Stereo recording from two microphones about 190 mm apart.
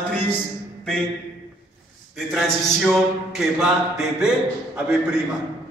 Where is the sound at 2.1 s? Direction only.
Centre (ahead or behind).